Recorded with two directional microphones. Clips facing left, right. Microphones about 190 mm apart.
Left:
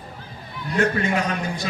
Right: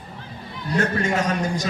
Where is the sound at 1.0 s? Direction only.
40° right (ahead or behind).